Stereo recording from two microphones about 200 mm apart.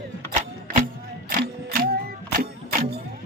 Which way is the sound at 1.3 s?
45° right (ahead or behind).